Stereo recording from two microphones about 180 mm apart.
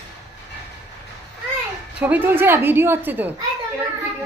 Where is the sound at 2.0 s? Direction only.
10° right (ahead or behind).